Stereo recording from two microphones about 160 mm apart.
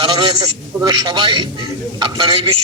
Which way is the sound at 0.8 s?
25° right (ahead or behind).